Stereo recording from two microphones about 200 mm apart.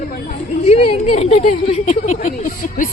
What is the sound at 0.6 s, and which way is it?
Speech, 30° left (ahead or behind).